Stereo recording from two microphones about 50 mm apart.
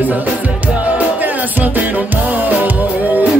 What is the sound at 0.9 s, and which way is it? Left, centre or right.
Music, right.